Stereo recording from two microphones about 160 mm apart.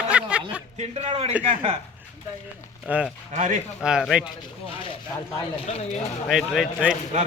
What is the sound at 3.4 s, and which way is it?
Speech, 50° right (ahead or behind).